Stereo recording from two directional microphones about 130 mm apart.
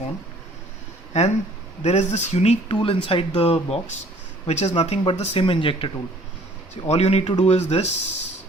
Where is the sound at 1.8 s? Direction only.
60° left (ahead or behind).